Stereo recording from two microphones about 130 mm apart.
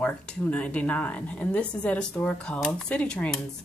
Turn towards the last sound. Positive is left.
turn(degrees=10)  # may be behind; listen again after turning